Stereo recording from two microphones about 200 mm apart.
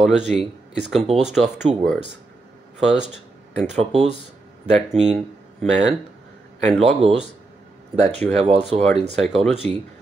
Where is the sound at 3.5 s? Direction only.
35° right (ahead or behind).